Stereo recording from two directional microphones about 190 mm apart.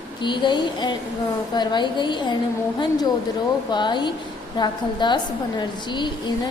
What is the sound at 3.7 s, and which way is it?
A woman's voice, 25° left (ahead or behind).